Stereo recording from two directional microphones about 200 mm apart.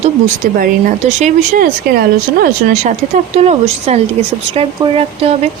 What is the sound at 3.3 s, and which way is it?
Speech, 35° right (ahead or behind).